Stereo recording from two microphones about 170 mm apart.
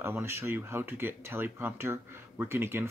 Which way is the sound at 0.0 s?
15° right (ahead or behind).